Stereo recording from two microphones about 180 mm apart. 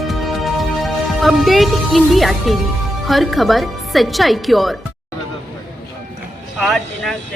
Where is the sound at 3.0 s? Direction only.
Centre (ahead or behind).